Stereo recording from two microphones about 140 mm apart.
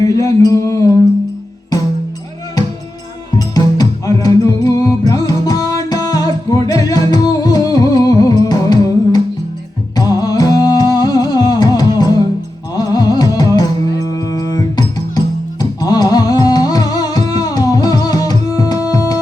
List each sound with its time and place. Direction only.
0.0 s mantra: 25° left (ahead or behind)
3.3 s music: 25° left (ahead or behind)